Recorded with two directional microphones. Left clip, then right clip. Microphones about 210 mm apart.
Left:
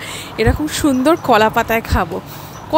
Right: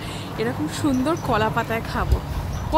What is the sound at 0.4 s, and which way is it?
Speech, 35° left (ahead or behind).